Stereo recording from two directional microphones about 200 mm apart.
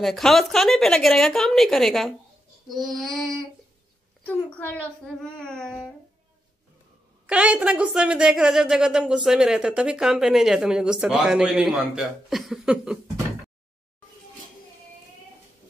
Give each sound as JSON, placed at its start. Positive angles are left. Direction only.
{"t": 0.0, "sound": "a woman's voice", "side_deg": 0}
{"t": 7.2, "sound": "a woman's voice", "side_deg": -5}